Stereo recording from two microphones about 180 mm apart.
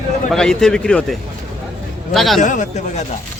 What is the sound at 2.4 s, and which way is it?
Speech, 45° left (ahead or behind).